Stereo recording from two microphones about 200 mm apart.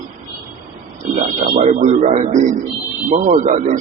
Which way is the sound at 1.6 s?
35° right (ahead or behind).